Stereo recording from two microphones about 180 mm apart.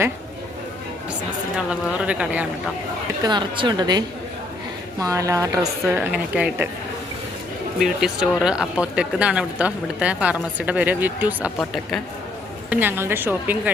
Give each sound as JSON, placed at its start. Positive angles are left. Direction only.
{"t": 1.5, "sound": "speech", "side_deg": -5}
{"t": 3.2, "sound": "a woman's voice", "side_deg": -25}
{"t": 7.8, "sound": "speech", "side_deg": 0}
{"t": 11.6, "sound": "a man's voice", "side_deg": 0}
{"t": 12.7, "sound": "speech", "side_deg": -10}